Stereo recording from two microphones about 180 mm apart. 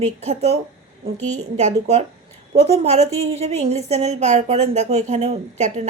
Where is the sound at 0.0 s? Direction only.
35° right (ahead or behind).